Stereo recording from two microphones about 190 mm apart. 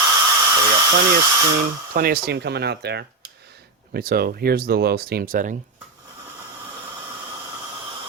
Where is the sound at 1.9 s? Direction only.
55° right (ahead or behind).